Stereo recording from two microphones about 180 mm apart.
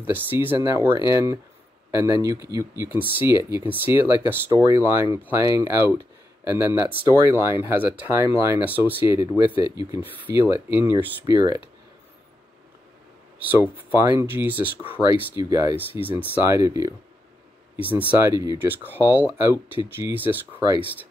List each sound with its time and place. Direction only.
0.0 s speech: 10° right (ahead or behind)
13.8 s speech: 15° right (ahead or behind)
17.9 s speech: 10° right (ahead or behind)